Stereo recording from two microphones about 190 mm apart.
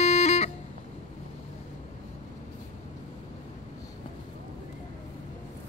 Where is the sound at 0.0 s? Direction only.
35° left (ahead or behind).